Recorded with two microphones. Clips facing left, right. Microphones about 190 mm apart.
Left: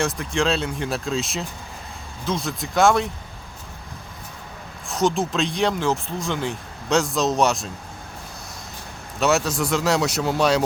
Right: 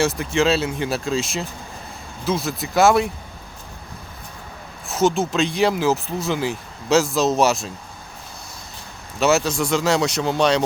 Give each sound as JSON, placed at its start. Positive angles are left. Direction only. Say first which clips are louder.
{"t": 0.0, "sound": "speech", "louder": "right 4 dB", "side_deg": -5}
{"t": 4.9, "sound": "speech", "louder": "right 2 dB", "side_deg": 0}
{"t": 9.2, "sound": "speech", "louder": "right 2 dB", "side_deg": 0}